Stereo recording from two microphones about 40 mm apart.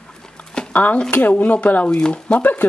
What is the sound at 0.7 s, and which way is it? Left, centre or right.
Speech, left.